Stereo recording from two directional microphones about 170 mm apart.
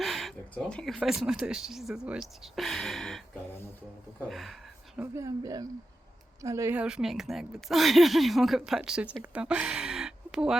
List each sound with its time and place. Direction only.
0.0 s a sound: centre (ahead or behind)
0.9 s a woman's voice: 5° right (ahead or behind)
2.2 s a sound: centre (ahead or behind)
3.5 s speech: 15° left (ahead or behind)
4.2 s a woman's voice: centre (ahead or behind)
4.9 s a woman's voice: 20° right (ahead or behind)